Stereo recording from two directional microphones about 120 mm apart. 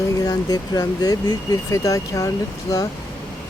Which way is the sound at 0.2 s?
35° left (ahead or behind).